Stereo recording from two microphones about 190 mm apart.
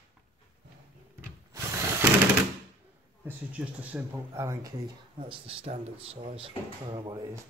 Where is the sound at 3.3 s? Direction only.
5° right (ahead or behind).